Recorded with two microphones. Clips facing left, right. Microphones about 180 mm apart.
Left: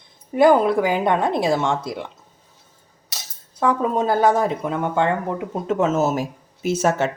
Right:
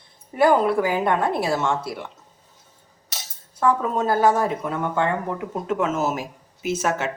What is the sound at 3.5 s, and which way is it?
Speech, 15° left (ahead or behind).